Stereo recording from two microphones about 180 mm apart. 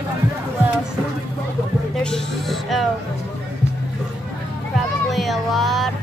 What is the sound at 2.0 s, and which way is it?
Speech, centre (ahead or behind).